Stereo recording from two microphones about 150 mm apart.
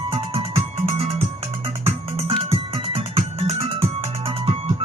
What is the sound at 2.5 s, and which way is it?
Music, 40° right (ahead or behind).